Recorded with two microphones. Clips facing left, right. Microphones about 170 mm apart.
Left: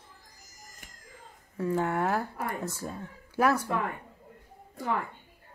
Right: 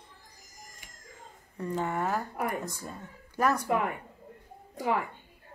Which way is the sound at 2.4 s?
15° right (ahead or behind).